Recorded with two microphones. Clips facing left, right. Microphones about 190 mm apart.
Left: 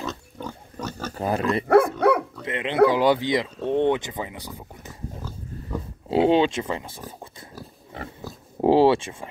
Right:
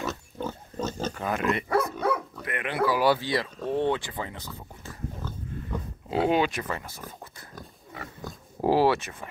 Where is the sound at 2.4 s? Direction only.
20° left (ahead or behind).